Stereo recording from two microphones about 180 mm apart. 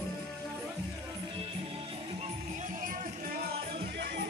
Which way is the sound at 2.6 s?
50° right (ahead or behind).